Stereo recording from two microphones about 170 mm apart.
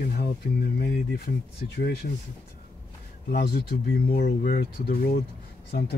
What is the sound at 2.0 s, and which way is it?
Speech, 65° left (ahead or behind).